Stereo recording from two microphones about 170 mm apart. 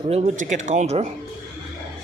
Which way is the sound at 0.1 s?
40° right (ahead or behind).